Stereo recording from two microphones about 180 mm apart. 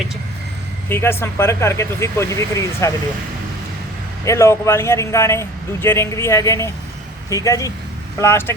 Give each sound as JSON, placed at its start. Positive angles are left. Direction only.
{"t": 0.9, "sound": "a man's voice", "side_deg": 10}
{"t": 4.3, "sound": "a man's voice", "side_deg": 15}